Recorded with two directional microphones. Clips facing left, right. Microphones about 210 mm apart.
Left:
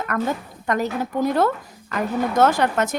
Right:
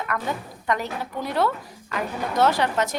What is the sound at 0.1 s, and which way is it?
Speech, 50° left (ahead or behind).